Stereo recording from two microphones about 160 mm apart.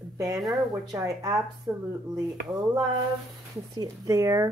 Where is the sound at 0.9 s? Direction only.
20° right (ahead or behind).